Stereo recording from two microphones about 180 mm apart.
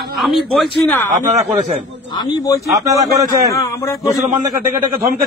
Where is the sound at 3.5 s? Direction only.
15° left (ahead or behind).